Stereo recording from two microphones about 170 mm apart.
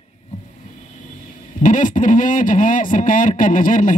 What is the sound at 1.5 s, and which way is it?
Speech, 50° left (ahead or behind).